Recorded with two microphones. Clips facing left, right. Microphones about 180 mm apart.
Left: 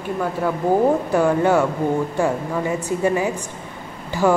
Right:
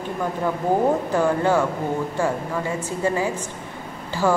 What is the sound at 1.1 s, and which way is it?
Speech, 15° left (ahead or behind).